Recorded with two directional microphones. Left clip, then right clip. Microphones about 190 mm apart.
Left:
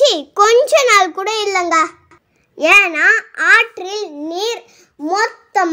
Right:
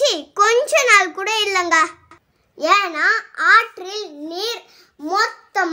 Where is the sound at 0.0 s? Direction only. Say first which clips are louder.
Left 5 dB; 30° left (ahead or behind).